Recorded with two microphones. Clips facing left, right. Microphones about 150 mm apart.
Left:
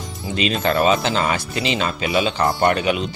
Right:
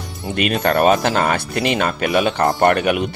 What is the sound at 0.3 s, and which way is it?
Speech, 55° right (ahead or behind).